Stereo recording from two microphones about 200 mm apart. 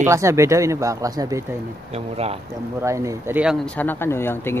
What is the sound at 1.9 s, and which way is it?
Speech, 30° right (ahead or behind).